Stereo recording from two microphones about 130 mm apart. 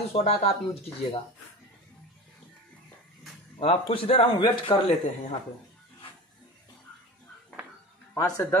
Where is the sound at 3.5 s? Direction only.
45° left (ahead or behind).